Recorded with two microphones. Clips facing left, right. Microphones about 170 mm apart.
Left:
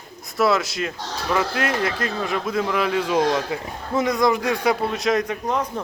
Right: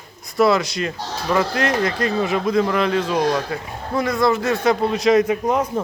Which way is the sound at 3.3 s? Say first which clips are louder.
Right 1 dB; 20° left (ahead or behind).